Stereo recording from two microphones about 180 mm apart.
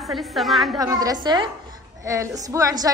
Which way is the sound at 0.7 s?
20° right (ahead or behind).